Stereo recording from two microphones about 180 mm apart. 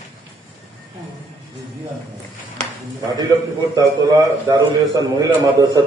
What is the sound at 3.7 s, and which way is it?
A man's voice, 20° right (ahead or behind).